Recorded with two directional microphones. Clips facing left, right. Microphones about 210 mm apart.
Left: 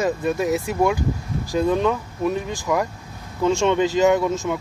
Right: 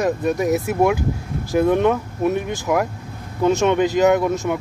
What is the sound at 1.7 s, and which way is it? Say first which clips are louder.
Speech: right 3 dB; 20° right (ahead or behind).